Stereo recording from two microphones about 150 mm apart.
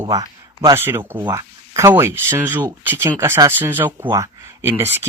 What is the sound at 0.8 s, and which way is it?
Speech, 15° right (ahead or behind).